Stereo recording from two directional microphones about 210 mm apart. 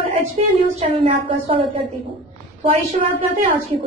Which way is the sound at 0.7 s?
25° right (ahead or behind).